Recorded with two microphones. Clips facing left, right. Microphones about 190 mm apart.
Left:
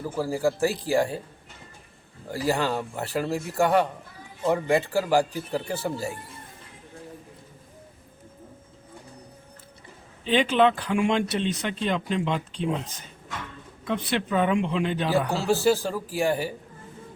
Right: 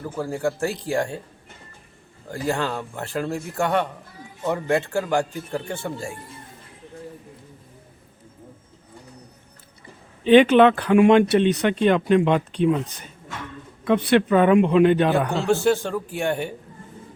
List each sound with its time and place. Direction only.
0.0 s speech: centre (ahead or behind)
2.3 s speech: 5° left (ahead or behind)
10.2 s speech: 60° right (ahead or behind)
13.8 s speech: 60° right (ahead or behind)
15.4 s speech: centre (ahead or behind)